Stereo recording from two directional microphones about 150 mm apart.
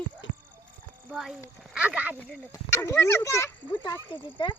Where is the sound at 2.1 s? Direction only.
15° left (ahead or behind).